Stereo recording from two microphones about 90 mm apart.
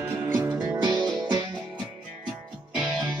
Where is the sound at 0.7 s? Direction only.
45° right (ahead or behind).